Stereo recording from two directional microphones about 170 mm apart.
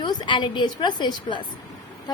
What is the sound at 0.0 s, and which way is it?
A woman's voice, 25° left (ahead or behind).